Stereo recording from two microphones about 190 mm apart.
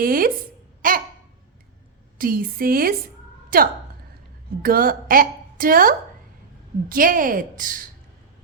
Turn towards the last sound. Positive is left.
turn(degrees=-45)  # may be behind; listen again after turning